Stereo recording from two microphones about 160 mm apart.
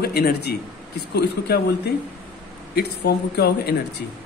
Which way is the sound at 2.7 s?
90° left.